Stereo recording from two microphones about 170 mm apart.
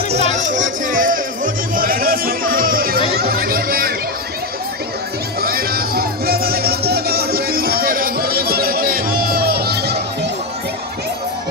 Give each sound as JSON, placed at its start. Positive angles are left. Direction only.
{"t": 0.1, "sound": "music", "side_deg": -45}
{"t": 1.7, "sound": "chatter", "side_deg": -55}
{"t": 5.4, "sound": "music", "side_deg": -60}